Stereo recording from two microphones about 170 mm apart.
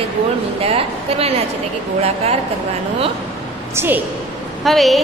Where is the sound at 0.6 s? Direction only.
35° right (ahead or behind).